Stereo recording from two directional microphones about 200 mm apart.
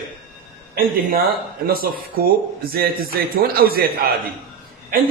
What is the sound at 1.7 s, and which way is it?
A man's voice, 45° right (ahead or behind).